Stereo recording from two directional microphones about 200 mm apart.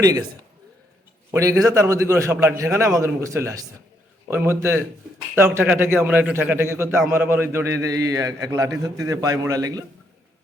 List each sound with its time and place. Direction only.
1.3 s a man's voice: 15° right (ahead or behind)